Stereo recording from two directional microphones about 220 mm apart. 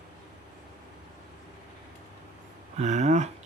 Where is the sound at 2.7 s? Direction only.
30° right (ahead or behind).